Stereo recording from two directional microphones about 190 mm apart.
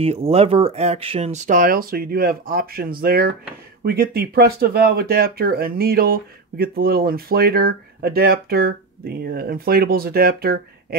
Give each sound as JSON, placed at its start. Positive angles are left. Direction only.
{"t": 0.0, "sound": "speech", "side_deg": -30}